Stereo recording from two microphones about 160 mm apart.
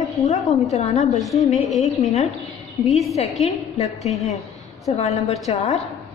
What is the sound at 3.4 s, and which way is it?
Speech, 40° left (ahead or behind).